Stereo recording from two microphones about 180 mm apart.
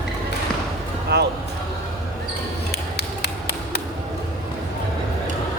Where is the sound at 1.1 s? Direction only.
65° right (ahead or behind).